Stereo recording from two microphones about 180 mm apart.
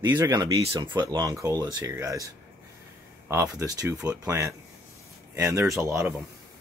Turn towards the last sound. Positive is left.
turn(degrees=-15)  # may be behind; listen again after turning